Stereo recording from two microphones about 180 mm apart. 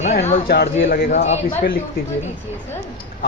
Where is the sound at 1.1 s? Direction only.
40° left (ahead or behind).